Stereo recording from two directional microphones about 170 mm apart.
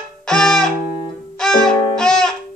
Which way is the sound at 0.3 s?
5° left (ahead or behind).